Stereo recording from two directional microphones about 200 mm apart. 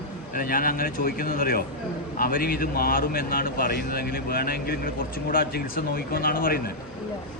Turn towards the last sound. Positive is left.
turn(degrees=45)  # may be behind; listen again after turning